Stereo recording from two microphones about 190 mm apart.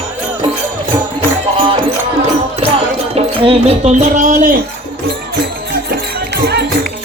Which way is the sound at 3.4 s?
30° right (ahead or behind).